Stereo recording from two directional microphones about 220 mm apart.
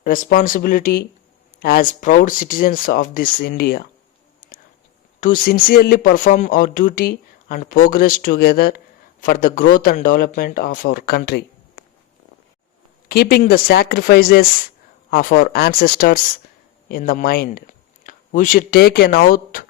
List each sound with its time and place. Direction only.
0.0 s speech: 40° left (ahead or behind)
5.2 s speech: 40° left (ahead or behind)
13.1 s speech: 45° left (ahead or behind)